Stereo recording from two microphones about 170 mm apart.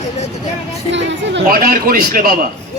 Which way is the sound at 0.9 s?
90° right.